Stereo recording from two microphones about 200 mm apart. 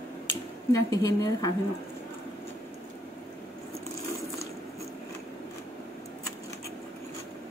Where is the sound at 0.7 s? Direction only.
15° left (ahead or behind).